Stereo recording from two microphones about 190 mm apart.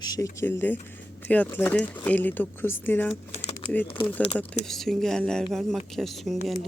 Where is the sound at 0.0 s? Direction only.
20° left (ahead or behind).